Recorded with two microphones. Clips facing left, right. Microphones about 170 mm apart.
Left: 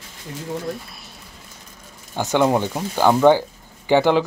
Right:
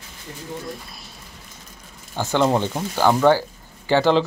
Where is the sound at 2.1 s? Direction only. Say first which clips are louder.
Left 1 dB; 15° left (ahead or behind).